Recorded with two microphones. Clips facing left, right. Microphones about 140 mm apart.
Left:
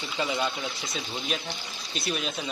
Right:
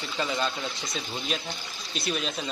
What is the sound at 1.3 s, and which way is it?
A man's voice, centre (ahead or behind).